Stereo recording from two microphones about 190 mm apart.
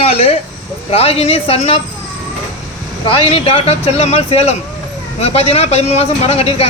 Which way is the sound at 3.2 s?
30° left (ahead or behind).